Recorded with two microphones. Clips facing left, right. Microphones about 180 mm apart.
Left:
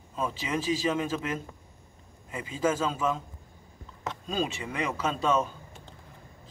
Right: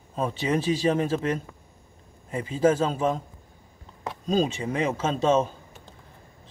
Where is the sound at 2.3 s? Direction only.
35° right (ahead or behind).